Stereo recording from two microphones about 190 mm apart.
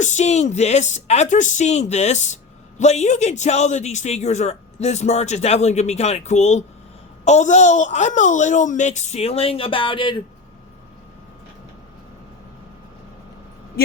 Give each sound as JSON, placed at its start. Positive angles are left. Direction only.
{"t": 0.0, "sound": "speech", "side_deg": 40}